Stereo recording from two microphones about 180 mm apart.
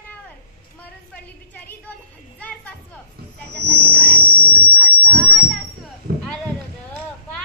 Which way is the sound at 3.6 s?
60° right (ahead or behind).